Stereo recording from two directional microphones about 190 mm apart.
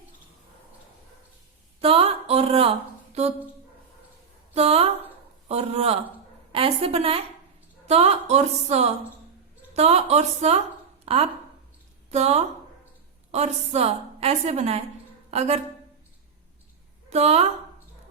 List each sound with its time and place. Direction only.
1.8 s a woman's voice: 30° right (ahead or behind)
4.5 s a woman's voice: 30° right (ahead or behind)
11.0 s a sound: 30° right (ahead or behind)
12.1 s a woman's voice: 35° right (ahead or behind)
17.1 s a woman's voice: 35° right (ahead or behind)